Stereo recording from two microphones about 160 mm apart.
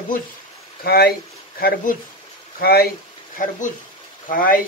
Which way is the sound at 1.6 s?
65° left (ahead or behind).